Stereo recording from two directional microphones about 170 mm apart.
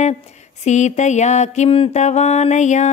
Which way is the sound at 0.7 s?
45° left (ahead or behind).